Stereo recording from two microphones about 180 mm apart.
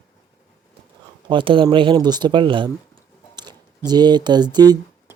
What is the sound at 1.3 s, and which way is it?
Speech, 25° right (ahead or behind).